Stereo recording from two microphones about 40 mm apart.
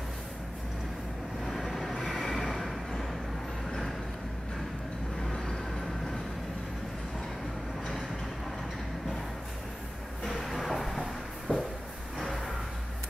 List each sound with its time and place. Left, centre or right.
1.4 s vehicle: centre
5.3 s vehicle: centre
10.2 s a sound: centre